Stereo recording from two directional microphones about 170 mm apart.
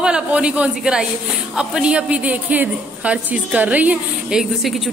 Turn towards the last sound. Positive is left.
turn(degrees=0)  # may be behind; listen again after turning